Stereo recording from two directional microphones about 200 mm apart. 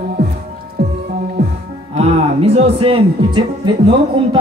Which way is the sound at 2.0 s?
30° right (ahead or behind).